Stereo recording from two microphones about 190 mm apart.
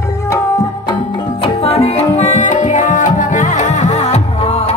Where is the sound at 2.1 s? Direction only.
40° left (ahead or behind).